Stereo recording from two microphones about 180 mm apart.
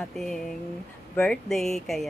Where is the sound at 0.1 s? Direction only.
Centre (ahead or behind).